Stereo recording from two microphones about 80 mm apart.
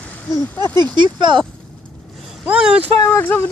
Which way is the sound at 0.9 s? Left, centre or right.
Right.